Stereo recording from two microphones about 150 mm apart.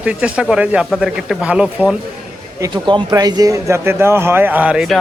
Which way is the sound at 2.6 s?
30° right (ahead or behind).